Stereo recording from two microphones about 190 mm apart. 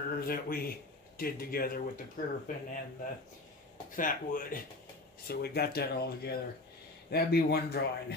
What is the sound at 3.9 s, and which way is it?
Speech, 45° left (ahead or behind).